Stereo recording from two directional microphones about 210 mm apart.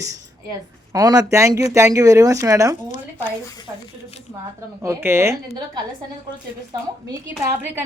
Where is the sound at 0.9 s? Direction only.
15° right (ahead or behind).